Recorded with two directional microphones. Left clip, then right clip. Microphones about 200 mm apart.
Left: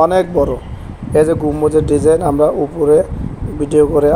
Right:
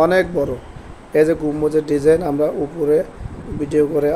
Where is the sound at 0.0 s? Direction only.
15° left (ahead or behind).